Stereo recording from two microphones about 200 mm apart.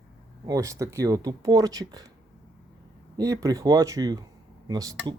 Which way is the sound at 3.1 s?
15° right (ahead or behind).